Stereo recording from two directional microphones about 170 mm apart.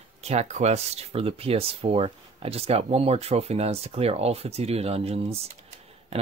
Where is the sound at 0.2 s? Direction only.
40° right (ahead or behind).